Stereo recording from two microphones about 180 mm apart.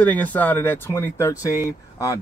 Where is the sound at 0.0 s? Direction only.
10° left (ahead or behind).